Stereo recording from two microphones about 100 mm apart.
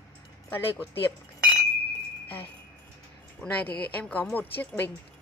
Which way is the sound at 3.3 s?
15° left (ahead or behind).